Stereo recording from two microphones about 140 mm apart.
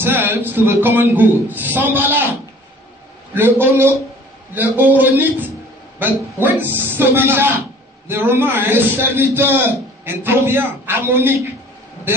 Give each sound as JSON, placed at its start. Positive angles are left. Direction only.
{"t": 0.0, "sound": "a man's voice", "side_deg": -15}
{"t": 3.3, "sound": "a man's voice", "side_deg": -15}
{"t": 6.3, "sound": "a man's voice", "side_deg": -15}